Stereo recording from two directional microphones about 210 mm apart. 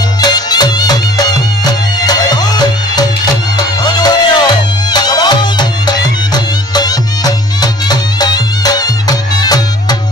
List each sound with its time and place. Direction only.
0.2 s music: 20° left (ahead or behind)